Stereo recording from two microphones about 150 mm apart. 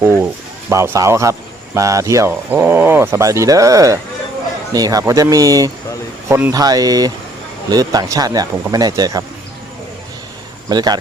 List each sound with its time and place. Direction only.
0.0 s speech: 20° right (ahead or behind)
10.7 s speech: 25° right (ahead or behind)